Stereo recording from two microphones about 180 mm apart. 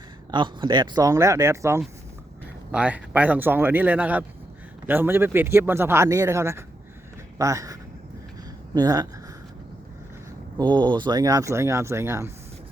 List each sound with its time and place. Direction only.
0.3 s speech: 25° right (ahead or behind)
10.6 s speech: 25° right (ahead or behind)